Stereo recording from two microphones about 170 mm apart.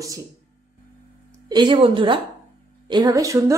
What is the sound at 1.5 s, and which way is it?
A woman's voice, 25° right (ahead or behind).